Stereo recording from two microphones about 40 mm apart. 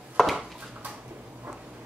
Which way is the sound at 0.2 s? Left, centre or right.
Centre.